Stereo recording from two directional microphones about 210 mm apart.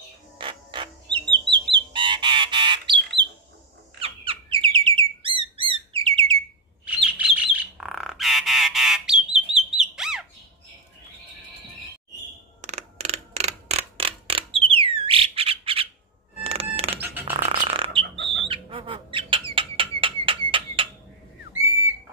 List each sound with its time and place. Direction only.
0.4 s bird: 25° right (ahead or behind)
4.0 s squeak: 25° right (ahead or behind)
4.7 s chirp: 25° right (ahead or behind)
7.1 s bird: 5° right (ahead or behind)
12.6 s mechanisms: 30° right (ahead or behind)
16.4 s music: 30° right (ahead or behind)
17.6 s bird: 25° right (ahead or behind)
18.1 s chicken: 60° right (ahead or behind)
18.5 s bird: 25° right (ahead or behind)
20.0 s a sound: 25° right (ahead or behind)